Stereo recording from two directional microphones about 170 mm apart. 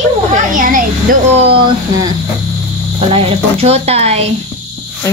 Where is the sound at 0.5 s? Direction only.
50° right (ahead or behind).